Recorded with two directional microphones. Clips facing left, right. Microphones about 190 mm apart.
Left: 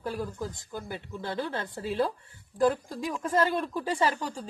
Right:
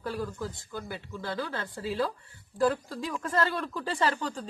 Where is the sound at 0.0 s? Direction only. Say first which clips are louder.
Even; 15° left (ahead or behind).